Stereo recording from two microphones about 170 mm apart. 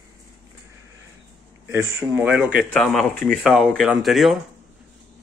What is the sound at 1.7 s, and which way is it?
Speech, 15° right (ahead or behind).